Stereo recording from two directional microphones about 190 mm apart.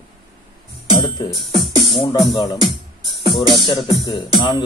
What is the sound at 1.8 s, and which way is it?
Speech, 25° left (ahead or behind).